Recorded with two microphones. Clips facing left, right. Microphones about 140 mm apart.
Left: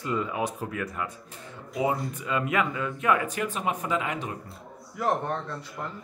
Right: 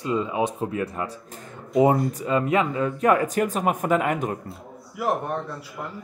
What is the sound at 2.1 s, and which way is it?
Speech, 35° right (ahead or behind).